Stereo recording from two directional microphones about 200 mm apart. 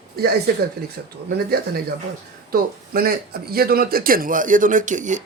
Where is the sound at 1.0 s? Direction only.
50° right (ahead or behind).